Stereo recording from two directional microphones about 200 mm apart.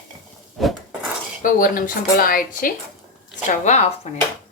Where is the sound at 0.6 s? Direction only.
Centre (ahead or behind).